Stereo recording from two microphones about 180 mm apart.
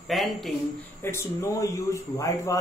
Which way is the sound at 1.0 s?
15° left (ahead or behind).